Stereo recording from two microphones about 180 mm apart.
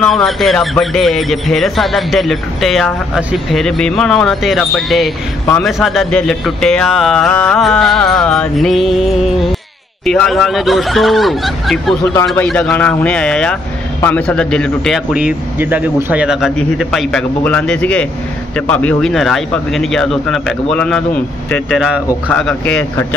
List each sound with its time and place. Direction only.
0.0 s a man's voice: centre (ahead or behind)
12.0 s speech: 15° left (ahead or behind)
12.4 s a man's voice: 5° left (ahead or behind)
15.1 s a man's voice: 5° right (ahead or behind)